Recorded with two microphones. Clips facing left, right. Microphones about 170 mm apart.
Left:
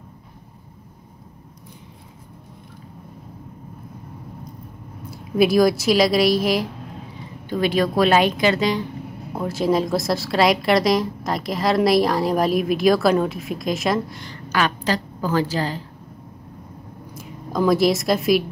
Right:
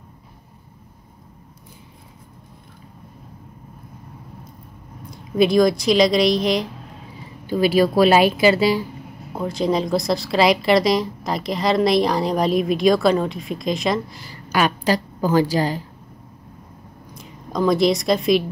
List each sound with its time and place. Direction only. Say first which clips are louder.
5.1 s a woman's voice: right 1 dB; 5° left (ahead or behind); by 15.8 s 15° right (ahead or behind)
17.1 s a woman's voice: left 1 dB; 5° left (ahead or behind)